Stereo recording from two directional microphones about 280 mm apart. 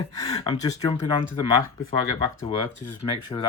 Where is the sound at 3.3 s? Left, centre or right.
Centre.